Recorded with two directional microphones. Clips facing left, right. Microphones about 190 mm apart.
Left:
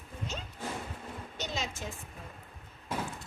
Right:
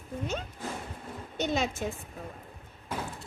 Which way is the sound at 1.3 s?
60° right (ahead or behind).